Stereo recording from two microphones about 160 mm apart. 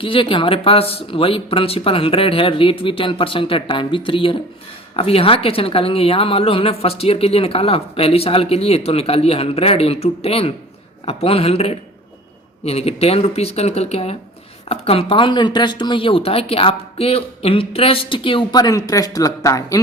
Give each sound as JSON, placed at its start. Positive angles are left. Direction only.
{"t": 0.0, "sound": "a woman's voice", "side_deg": 35}